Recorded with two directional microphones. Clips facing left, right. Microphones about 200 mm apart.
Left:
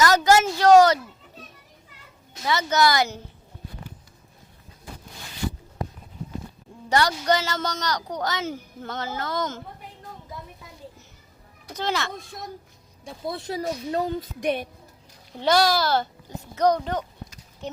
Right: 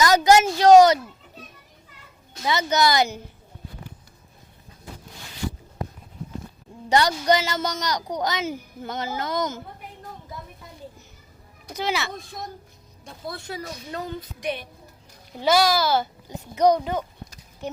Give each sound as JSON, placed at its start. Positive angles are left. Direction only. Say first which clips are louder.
{"t": 0.0, "sound": "a sound", "louder": "right 2 dB", "side_deg": -15}
{"t": 2.4, "sound": "a woman's voice", "louder": "even", "side_deg": -15}
{"t": 6.9, "sound": "a woman's voice", "louder": "right 2 dB", "side_deg": -15}
{"t": 11.7, "sound": "a woman's voice", "louder": "even", "side_deg": -10}
{"t": 13.5, "sound": "speech", "louder": "left 10 dB", "side_deg": 40}
{"t": 15.4, "sound": "a child's voice", "louder": "right 1 dB", "side_deg": -5}